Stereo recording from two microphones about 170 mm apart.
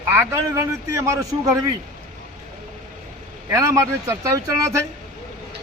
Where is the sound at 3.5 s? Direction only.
15° right (ahead or behind).